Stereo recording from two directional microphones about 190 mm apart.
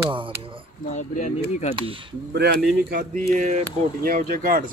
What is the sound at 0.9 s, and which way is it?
Speech, 40° left (ahead or behind).